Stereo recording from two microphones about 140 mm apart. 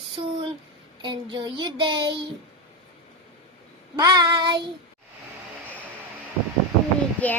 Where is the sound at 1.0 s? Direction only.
35° right (ahead or behind).